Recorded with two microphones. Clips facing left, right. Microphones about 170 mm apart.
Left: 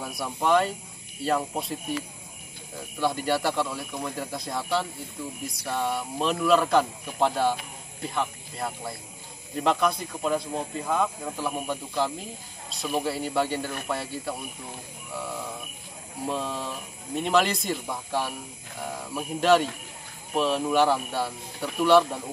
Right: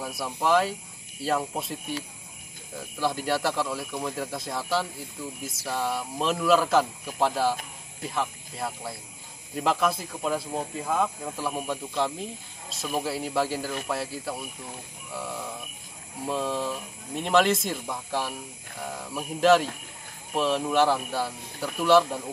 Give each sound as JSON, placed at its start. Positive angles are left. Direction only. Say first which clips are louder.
{"t": 0.0, "sound": "speech", "louder": "even", "side_deg": 0}
{"t": 3.0, "sound": "speech", "louder": "left 1 dB", "side_deg": 0}
{"t": 16.3, "sound": "speech", "louder": "right 3 dB", "side_deg": 0}